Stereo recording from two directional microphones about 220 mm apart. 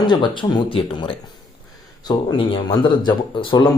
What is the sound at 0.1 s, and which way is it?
Speech, 20° left (ahead or behind).